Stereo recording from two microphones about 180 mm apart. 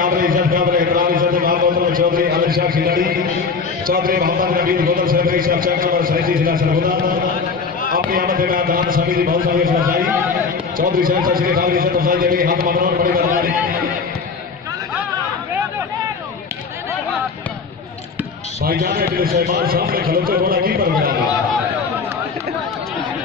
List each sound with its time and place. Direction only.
0.0 s a sound: 50° right (ahead or behind)
3.8 s a man's voice: 55° right (ahead or behind)
18.6 s a man's voice: 55° right (ahead or behind)